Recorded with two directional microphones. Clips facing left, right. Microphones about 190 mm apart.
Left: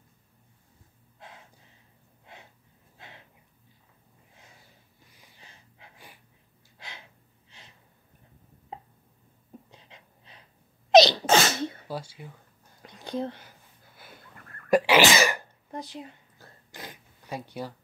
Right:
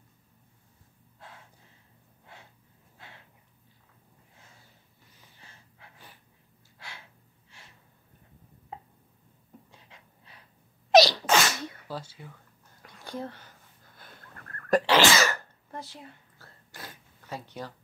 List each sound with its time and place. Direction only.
2.3 s gasp: 20° left (ahead or behind)
5.1 s snort: 15° left (ahead or behind)
6.8 s gasp: 20° left (ahead or behind)
8.7 s a sound: 20° left (ahead or behind)
10.9 s sneeze: 20° left (ahead or behind)
11.9 s speech: 10° left (ahead or behind)
12.8 s a sound: 20° left (ahead or behind)
14.7 s sneeze: 15° left (ahead or behind)